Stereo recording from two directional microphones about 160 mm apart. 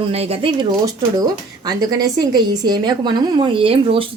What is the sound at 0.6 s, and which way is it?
Speech, 25° right (ahead or behind).